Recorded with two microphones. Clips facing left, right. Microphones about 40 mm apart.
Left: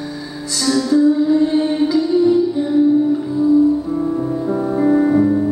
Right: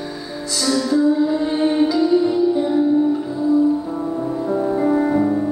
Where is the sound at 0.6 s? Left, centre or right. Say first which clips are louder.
Left 3 dB; centre.